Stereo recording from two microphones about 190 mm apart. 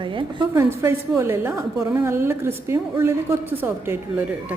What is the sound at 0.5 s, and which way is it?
A woman's voice, 15° right (ahead or behind).